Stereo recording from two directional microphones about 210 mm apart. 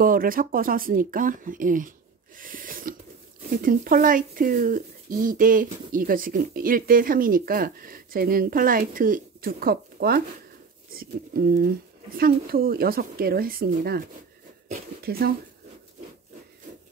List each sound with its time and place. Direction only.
0.0 s speech: 40° right (ahead or behind)
15.0 s speech: 45° right (ahead or behind)